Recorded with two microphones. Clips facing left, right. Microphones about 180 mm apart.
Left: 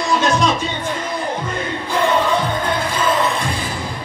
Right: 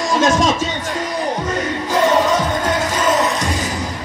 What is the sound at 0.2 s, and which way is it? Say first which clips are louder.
Speech: right 5 dB; 45° right (ahead or behind).